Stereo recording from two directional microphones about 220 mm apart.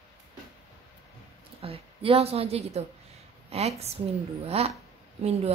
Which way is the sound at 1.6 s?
25° right (ahead or behind).